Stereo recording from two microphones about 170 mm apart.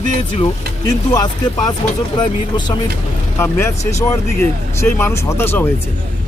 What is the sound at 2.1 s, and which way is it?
Speech, 25° left (ahead or behind).